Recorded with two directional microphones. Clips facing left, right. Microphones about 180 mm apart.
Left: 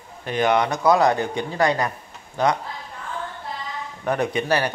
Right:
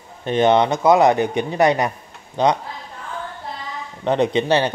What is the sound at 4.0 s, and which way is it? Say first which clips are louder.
Speech: right 5 dB; 25° right (ahead or behind).